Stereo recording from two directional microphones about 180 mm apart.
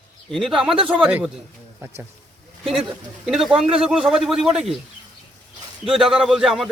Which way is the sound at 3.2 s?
5° right (ahead or behind).